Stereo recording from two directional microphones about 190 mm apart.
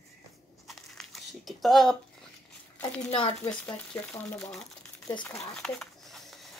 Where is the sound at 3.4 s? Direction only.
5° left (ahead or behind).